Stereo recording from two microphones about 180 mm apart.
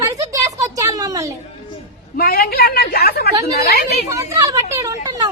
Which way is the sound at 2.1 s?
55° left (ahead or behind).